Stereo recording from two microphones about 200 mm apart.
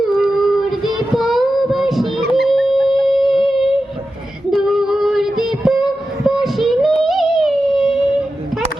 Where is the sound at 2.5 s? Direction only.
Centre (ahead or behind).